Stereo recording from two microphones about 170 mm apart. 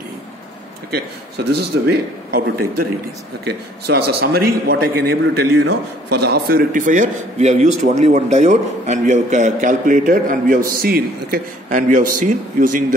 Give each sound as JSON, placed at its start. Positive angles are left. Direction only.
{"t": 1.5, "sound": "a man's voice", "side_deg": -65}